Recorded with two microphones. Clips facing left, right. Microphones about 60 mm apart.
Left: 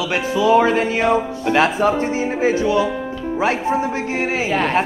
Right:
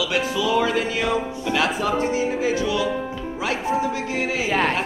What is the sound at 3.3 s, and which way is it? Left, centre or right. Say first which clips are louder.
Speech: left 5 dB; left.